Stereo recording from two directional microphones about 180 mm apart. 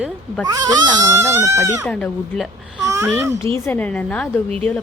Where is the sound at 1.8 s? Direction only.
5° left (ahead or behind).